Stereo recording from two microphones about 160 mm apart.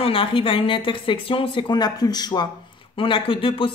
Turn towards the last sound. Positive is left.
turn(degrees=35)  # may be behind; listen again after turning